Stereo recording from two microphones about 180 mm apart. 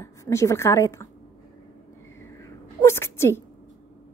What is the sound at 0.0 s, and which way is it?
A woman's voice, 15° left (ahead or behind).